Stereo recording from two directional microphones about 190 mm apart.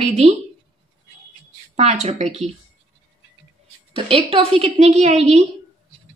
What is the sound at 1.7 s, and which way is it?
Speech, 35° right (ahead or behind).